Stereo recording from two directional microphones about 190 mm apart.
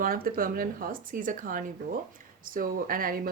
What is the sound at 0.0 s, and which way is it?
Speech, 50° right (ahead or behind).